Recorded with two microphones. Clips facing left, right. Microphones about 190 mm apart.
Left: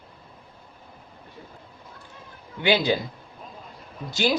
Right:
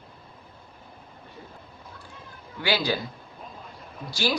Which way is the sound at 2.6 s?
20° left (ahead or behind).